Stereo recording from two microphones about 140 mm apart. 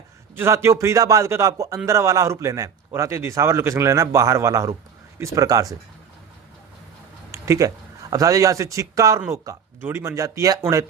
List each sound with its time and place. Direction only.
0.3 s a man's voice: 20° right (ahead or behind)
7.3 s a sound: 20° right (ahead or behind)
8.1 s a man's voice: 25° right (ahead or behind)